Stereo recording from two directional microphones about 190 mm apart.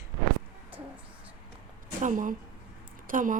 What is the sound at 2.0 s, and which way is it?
A woman's voice, 45° right (ahead or behind).